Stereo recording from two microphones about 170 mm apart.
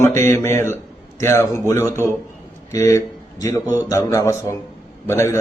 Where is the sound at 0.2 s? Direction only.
15° left (ahead or behind).